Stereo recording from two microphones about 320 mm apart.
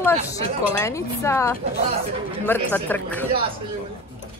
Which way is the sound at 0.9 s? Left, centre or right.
Centre.